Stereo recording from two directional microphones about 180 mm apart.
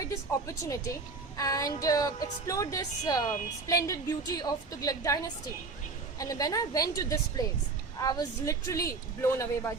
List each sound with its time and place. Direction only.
0.1 s a woman's voice: 15° left (ahead or behind)